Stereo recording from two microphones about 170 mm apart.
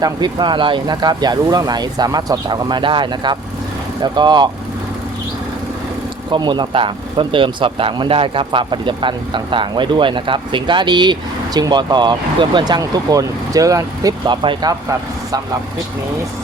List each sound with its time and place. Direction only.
0.0 s speech: 25° right (ahead or behind)
6.3 s speech: 25° right (ahead or behind)